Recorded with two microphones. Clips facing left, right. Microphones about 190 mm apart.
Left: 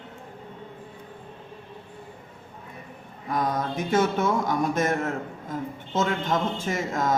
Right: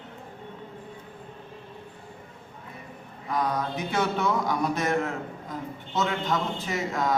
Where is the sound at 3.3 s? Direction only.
45° left (ahead or behind).